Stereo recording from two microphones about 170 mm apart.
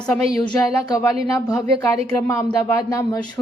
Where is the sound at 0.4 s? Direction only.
20° left (ahead or behind).